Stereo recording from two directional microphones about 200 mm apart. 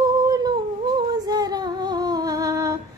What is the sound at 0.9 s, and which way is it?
Humming, 20° right (ahead or behind).